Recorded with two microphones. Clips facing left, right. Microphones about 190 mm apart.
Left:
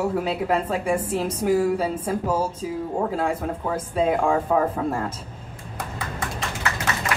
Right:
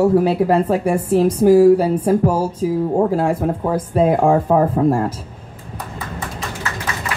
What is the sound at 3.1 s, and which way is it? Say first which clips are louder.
Speech: right 7 dB; 35° right (ahead or behind).